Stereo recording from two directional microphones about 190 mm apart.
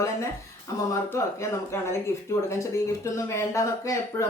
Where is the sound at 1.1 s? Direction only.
15° left (ahead or behind).